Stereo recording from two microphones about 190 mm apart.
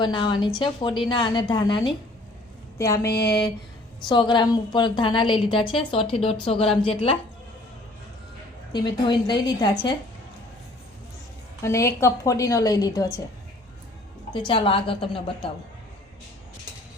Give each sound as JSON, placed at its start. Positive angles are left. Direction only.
{"t": 0.0, "sound": "a woman's voice", "side_deg": 25}
{"t": 3.1, "sound": "speech", "side_deg": 55}
{"t": 4.1, "sound": "a woman's voice", "side_deg": 25}
{"t": 8.7, "sound": "a woman's voice", "side_deg": 25}
{"t": 11.6, "sound": "a woman's voice", "side_deg": 15}
{"t": 14.3, "sound": "a woman's voice", "side_deg": 25}